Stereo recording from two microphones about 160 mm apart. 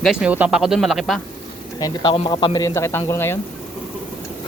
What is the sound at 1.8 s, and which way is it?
A man's voice, 30° left (ahead or behind).